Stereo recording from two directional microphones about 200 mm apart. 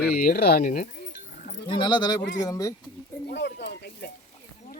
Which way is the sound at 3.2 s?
60° left (ahead or behind).